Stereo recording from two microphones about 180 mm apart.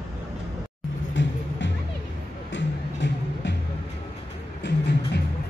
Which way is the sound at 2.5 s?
80° left.